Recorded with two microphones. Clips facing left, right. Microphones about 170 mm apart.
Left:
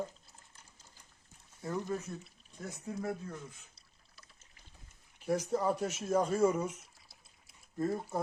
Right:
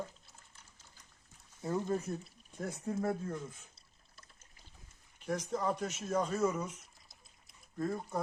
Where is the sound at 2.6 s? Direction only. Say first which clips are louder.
Right 4 dB; 50° right (ahead or behind).